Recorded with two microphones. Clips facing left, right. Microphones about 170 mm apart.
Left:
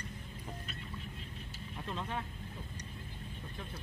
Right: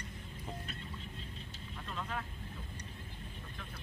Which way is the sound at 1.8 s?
25° left (ahead or behind).